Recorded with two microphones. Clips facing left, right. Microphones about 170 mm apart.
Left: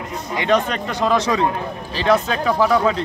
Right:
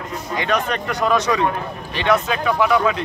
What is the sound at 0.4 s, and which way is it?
Speech, 25° left (ahead or behind).